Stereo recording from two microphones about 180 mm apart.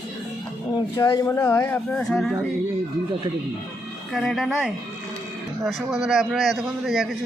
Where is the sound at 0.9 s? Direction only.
20° left (ahead or behind).